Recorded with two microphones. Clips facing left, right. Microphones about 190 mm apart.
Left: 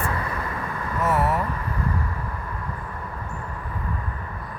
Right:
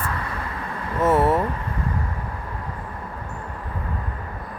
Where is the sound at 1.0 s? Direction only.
30° right (ahead or behind).